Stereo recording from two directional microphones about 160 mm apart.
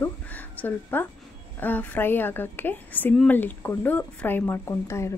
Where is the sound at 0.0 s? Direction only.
10° left (ahead or behind).